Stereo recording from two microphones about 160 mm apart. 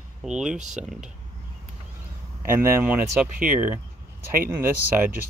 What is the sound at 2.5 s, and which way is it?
Speech, 15° right (ahead or behind).